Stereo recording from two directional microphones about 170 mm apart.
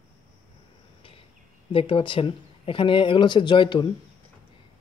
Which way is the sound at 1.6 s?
30° left (ahead or behind).